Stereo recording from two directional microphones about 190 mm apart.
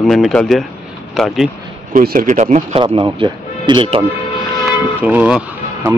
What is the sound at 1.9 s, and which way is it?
Speech, 45° right (ahead or behind).